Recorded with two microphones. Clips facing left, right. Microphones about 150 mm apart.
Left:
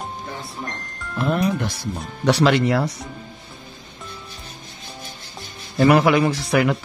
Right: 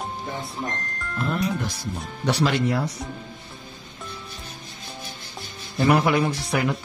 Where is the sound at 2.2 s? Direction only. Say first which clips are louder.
Left 5 dB; 90° left.